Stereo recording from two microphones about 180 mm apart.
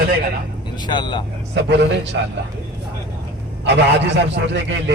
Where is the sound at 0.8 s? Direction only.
25° left (ahead or behind).